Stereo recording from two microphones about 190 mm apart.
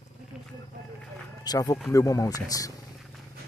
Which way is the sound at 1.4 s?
20° left (ahead or behind).